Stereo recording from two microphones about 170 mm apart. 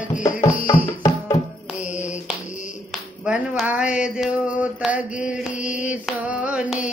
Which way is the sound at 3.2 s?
5° right (ahead or behind).